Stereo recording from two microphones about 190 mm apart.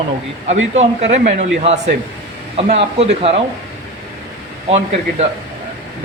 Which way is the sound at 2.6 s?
30° right (ahead or behind).